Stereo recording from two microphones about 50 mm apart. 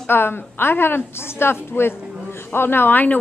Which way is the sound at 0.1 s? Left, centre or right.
Left.